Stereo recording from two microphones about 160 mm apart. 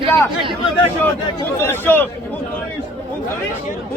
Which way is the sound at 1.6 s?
15° left (ahead or behind).